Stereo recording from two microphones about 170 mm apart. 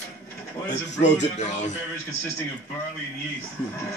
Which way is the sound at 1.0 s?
45° left (ahead or behind).